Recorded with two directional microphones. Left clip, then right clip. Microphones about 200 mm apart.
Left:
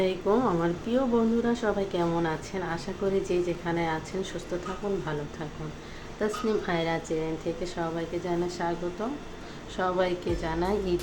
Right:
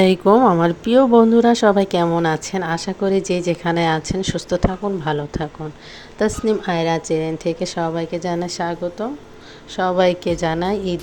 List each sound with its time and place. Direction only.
0.0 s speech: 50° right (ahead or behind)